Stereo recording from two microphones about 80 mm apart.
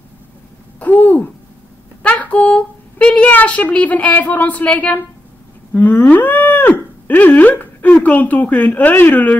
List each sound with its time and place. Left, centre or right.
0.7 s a sound: left
2.0 s a woman's voice: centre
5.7 s cattle: left